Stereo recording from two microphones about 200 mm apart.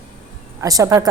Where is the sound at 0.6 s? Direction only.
15° right (ahead or behind).